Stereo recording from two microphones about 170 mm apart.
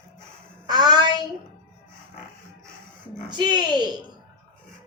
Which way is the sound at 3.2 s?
25° right (ahead or behind).